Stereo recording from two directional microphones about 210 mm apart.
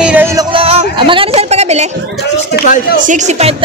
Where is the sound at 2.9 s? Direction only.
35° right (ahead or behind).